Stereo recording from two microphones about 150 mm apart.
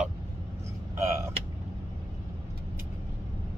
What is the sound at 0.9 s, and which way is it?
Speech, 15° right (ahead or behind).